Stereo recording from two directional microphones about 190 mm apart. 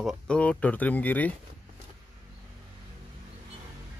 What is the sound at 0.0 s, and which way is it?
Speech, centre (ahead or behind).